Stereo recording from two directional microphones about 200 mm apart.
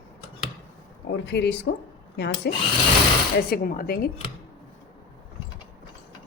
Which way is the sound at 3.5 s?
50° left (ahead or behind).